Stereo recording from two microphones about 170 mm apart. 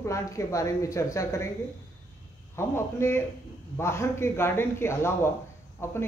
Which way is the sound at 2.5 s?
15° left (ahead or behind).